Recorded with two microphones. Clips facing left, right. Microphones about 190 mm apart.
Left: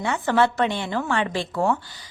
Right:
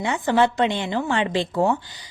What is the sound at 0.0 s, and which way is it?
A woman's voice, 15° right (ahead or behind).